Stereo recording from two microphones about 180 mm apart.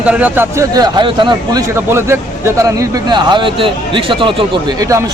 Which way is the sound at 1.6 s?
15° right (ahead or behind).